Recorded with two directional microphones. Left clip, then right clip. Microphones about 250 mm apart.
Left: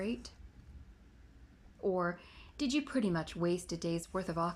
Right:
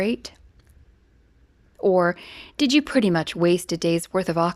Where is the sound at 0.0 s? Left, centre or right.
Right.